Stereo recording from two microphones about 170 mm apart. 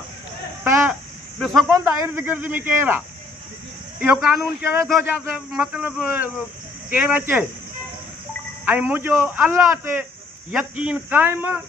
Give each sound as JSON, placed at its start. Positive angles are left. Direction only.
{"t": 0.7, "sound": "a sound", "side_deg": -15}
{"t": 1.4, "sound": "speech", "side_deg": 0}
{"t": 1.7, "sound": "a man's voice", "side_deg": -15}
{"t": 4.0, "sound": "a man's voice", "side_deg": -5}
{"t": 8.6, "sound": "a man's voice", "side_deg": -10}